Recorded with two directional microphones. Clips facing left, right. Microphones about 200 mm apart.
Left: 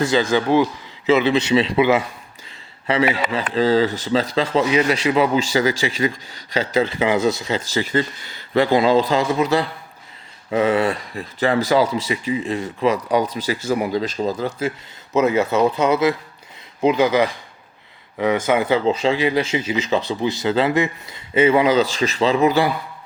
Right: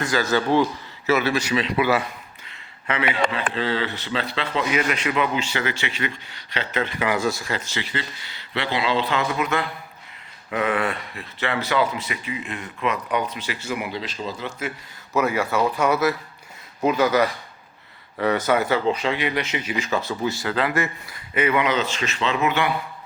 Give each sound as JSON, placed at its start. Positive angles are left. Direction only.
{"t": 0.3, "sound": "a man's voice", "side_deg": 15}
{"t": 2.8, "sound": "speech", "side_deg": 35}
{"t": 4.7, "sound": "speech", "side_deg": 25}
{"t": 7.6, "sound": "speech", "side_deg": 40}
{"t": 15.1, "sound": "a man's voice", "side_deg": 20}
{"t": 18.5, "sound": "speech", "side_deg": 15}
{"t": 18.9, "sound": "a man's voice", "side_deg": 25}